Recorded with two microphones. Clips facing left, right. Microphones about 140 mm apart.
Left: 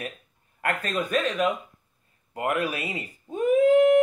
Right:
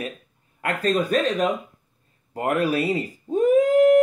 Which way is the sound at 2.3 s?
35° right (ahead or behind).